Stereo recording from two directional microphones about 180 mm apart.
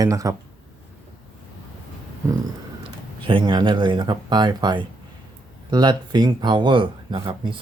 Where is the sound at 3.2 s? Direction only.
25° right (ahead or behind).